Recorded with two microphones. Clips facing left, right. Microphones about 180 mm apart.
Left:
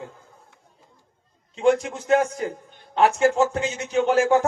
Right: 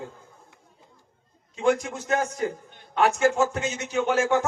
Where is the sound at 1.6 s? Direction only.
30° left (ahead or behind).